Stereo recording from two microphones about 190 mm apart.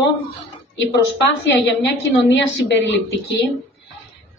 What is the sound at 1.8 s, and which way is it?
Speech, 70° left (ahead or behind).